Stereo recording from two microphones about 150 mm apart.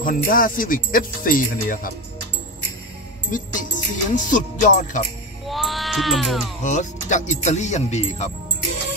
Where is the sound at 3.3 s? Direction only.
65° left (ahead or behind).